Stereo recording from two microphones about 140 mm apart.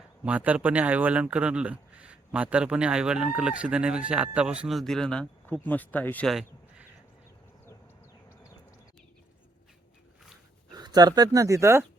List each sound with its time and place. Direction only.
0.3 s speech: 10° right (ahead or behind); by 6.3 s 10° left (ahead or behind)
10.8 s speech: 30° right (ahead or behind)